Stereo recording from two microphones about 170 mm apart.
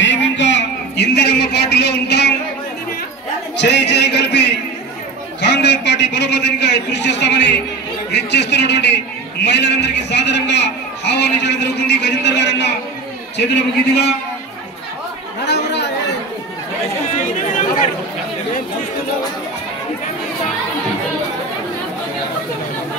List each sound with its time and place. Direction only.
0.0 s a sound: 90° left
3.6 s music: 90° left
5.4 s a sound: 90° left
8.1 s a man's voice: 90° left
15.4 s chatter: 80° left
17.1 s chatter: 45° left (ahead or behind)